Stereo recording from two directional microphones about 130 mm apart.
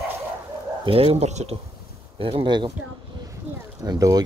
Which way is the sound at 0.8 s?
45° right (ahead or behind).